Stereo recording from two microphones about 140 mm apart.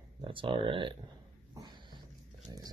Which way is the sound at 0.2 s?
40° right (ahead or behind).